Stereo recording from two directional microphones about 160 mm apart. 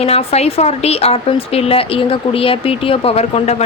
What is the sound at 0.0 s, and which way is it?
A woman's voice, 40° left (ahead or behind).